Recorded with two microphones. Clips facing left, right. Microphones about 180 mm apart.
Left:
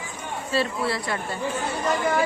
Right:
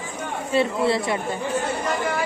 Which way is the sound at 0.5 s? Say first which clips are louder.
Right 5 dB; 20° right (ahead or behind).